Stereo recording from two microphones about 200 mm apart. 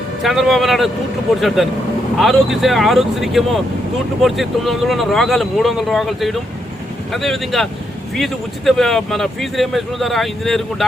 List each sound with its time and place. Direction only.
0.2 s speech: centre (ahead or behind)